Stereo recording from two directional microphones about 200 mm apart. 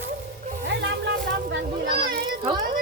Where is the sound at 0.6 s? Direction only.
60° right (ahead or behind).